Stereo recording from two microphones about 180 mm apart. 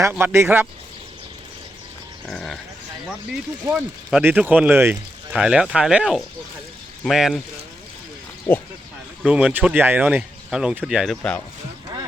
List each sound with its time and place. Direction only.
0.0 s speech: 10° right (ahead or behind)
2.2 s speech: 5° left (ahead or behind)
3.7 s speech: 5° right (ahead or behind)
9.2 s speech: 5° right (ahead or behind)